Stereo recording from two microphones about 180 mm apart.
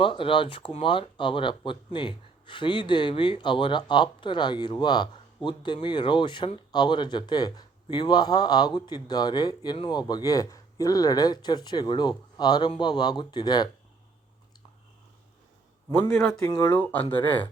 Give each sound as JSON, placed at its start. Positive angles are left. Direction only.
{"t": 0.0, "sound": "speech", "side_deg": 30}
{"t": 15.9, "sound": "a man's voice", "side_deg": 10}